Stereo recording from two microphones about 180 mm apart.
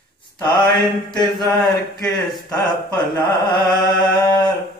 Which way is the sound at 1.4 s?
Centre (ahead or behind).